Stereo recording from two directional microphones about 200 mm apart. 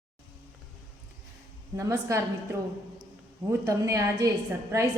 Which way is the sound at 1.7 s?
15° right (ahead or behind).